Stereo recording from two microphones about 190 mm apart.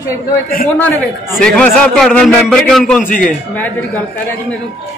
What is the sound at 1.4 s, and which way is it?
A man's voice, 5° left (ahead or behind).